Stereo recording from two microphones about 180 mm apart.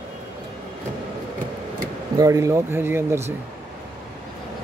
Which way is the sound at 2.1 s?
15° right (ahead or behind).